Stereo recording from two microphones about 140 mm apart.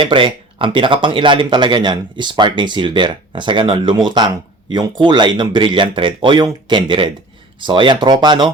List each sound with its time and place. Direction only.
0.0 s speech: 35° right (ahead or behind)